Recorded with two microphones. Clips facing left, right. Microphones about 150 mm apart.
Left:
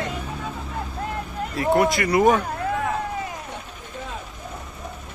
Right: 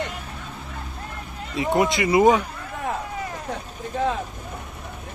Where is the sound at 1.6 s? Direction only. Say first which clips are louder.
Left 1 dB; 20° right (ahead or behind).